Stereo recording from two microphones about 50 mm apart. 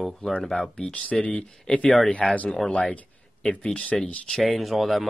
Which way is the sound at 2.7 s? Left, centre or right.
Centre.